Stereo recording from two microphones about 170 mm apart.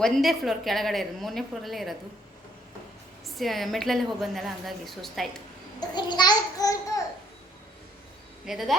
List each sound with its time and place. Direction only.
0.0 s a woman's voice: centre (ahead or behind)
3.2 s a woman's voice: centre (ahead or behind)
5.9 s a child's voice: 25° left (ahead or behind)
8.4 s a woman's voice: centre (ahead or behind)